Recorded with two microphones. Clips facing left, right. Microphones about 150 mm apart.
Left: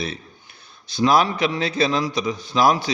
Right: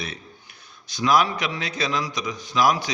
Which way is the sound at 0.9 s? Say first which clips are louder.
Left 3 dB; 30° left (ahead or behind).